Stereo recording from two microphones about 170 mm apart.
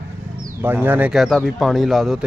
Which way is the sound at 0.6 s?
10° right (ahead or behind).